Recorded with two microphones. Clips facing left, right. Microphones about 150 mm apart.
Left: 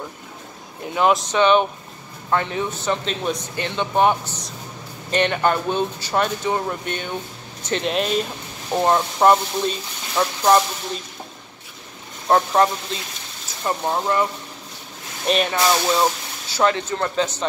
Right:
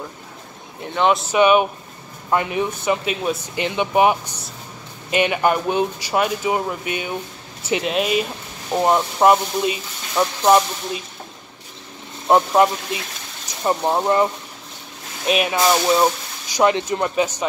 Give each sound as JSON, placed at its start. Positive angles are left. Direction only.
{"t": 0.9, "sound": "speech", "side_deg": 0}
{"t": 1.3, "sound": "speech", "side_deg": -10}
{"t": 12.3, "sound": "speech", "side_deg": -15}
{"t": 15.2, "sound": "speech", "side_deg": -5}